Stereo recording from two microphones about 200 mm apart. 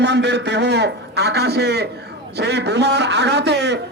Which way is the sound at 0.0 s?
60° right (ahead or behind).